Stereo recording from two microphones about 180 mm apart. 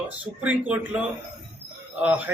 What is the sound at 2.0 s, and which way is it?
Speech, 10° right (ahead or behind).